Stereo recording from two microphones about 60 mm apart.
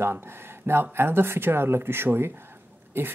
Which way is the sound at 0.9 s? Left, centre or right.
Right.